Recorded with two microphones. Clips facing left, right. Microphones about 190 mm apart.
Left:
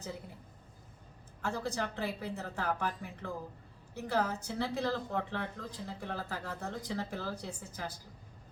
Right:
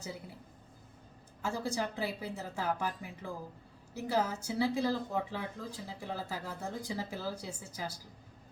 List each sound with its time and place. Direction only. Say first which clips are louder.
1.4 s a woman's voice: right 1 dB; 10° right (ahead or behind)